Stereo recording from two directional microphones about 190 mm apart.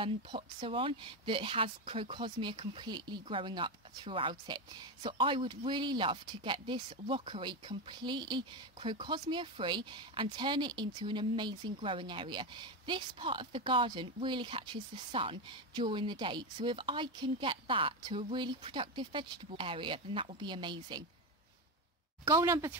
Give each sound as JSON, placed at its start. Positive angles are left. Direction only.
{"t": 0.0, "sound": "speech", "side_deg": -25}
{"t": 22.2, "sound": "speech", "side_deg": -15}